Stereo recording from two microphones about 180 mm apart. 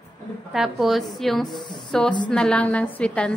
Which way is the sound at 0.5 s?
Centre (ahead or behind).